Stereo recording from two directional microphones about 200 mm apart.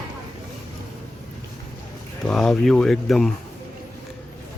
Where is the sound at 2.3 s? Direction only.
Centre (ahead or behind).